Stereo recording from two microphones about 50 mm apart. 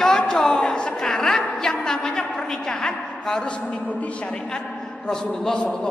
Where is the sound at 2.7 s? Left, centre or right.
Centre.